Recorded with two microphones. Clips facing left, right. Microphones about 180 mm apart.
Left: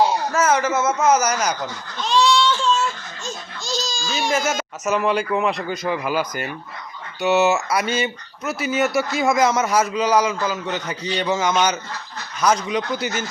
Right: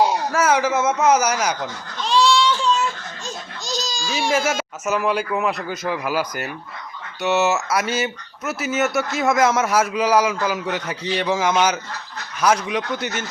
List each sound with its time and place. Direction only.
0.0 s speech: 10° right (ahead or behind)
2.1 s baby cry: 10° right (ahead or behind)
3.2 s crying: 40° right (ahead or behind)
4.0 s speech: 10° right (ahead or behind)